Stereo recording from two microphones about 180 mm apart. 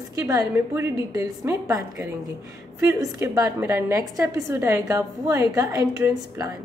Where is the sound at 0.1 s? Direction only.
20° right (ahead or behind).